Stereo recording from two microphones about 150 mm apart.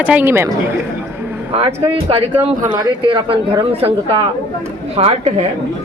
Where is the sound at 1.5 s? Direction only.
40° right (ahead or behind).